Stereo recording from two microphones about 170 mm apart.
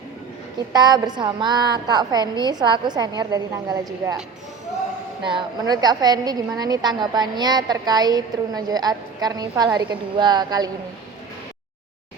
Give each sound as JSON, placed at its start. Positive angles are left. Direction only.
{"t": 0.7, "sound": "a woman's voice", "side_deg": -25}
{"t": 5.2, "sound": "a woman's voice", "side_deg": -30}